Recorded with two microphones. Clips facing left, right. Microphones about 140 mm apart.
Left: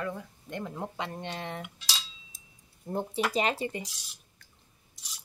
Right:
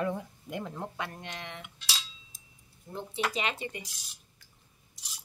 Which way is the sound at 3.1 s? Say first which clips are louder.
Right 1 dB; 10° left (ahead or behind).